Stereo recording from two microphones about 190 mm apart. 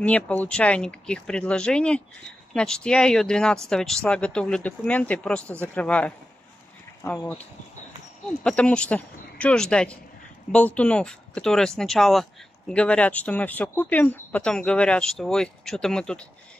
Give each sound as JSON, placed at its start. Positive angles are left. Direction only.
{"t": 0.0, "sound": "speech", "side_deg": 10}
{"t": 8.5, "sound": "speech", "side_deg": 5}